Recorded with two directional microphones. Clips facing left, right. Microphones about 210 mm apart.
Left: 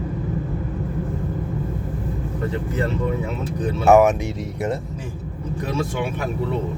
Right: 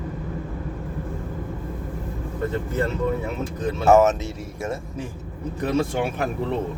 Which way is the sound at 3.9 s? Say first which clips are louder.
Left 2 dB; 15° left (ahead or behind).